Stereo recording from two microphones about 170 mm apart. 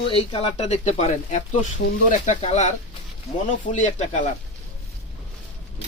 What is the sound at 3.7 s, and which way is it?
Speech, 45° left (ahead or behind).